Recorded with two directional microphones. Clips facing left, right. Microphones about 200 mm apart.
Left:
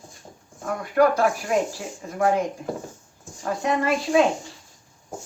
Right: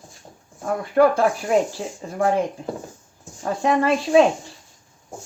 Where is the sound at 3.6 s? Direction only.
30° right (ahead or behind).